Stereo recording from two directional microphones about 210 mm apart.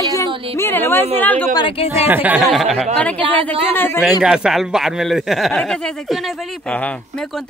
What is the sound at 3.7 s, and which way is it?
Speech, 10° left (ahead or behind).